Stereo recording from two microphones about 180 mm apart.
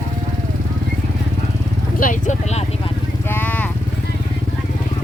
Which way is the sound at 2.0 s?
45° left (ahead or behind).